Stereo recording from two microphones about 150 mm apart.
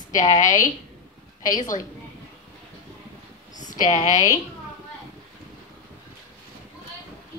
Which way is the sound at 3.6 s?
55° left (ahead or behind).